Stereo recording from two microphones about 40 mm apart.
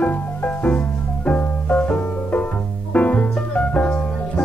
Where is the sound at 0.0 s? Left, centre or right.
Left.